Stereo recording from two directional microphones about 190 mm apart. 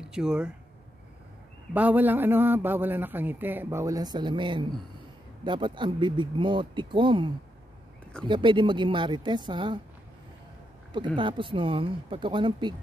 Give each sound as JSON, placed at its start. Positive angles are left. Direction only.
{"t": 0.0, "sound": "speech", "side_deg": -5}
{"t": 1.7, "sound": "a man's voice", "side_deg": -10}
{"t": 11.1, "sound": "speech", "side_deg": -25}